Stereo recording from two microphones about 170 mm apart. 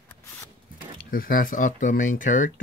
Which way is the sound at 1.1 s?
55° left (ahead or behind).